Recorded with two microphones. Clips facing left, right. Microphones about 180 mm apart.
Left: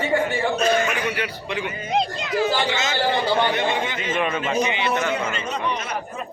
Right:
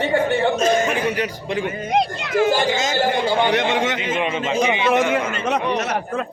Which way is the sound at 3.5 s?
85° right.